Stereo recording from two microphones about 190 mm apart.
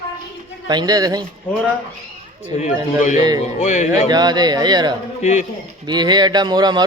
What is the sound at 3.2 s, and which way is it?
Speech, 20° right (ahead or behind).